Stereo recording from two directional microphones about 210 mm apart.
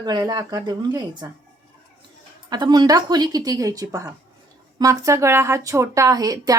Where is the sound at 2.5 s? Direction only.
20° right (ahead or behind).